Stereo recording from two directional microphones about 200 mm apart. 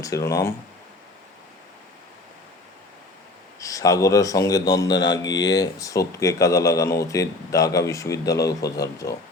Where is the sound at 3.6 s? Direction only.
15° left (ahead or behind).